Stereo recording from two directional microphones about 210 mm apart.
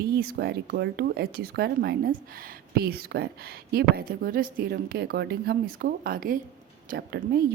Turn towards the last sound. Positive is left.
turn(degrees=-50)  # may be behind; listen again after turning